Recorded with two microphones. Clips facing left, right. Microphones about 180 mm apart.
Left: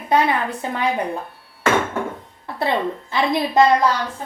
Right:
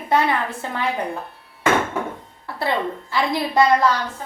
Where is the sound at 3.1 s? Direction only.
20° left (ahead or behind).